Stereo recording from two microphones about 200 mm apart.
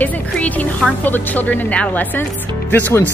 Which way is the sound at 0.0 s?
5° left (ahead or behind).